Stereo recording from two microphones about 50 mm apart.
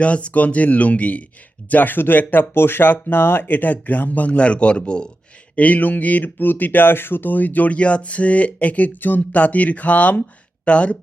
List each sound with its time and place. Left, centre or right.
0.0 s speech: left
1.7 s speech: left; by 5.0 s centre
5.5 s speech: left